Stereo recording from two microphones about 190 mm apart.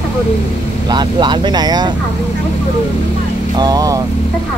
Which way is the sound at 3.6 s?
20° right (ahead or behind).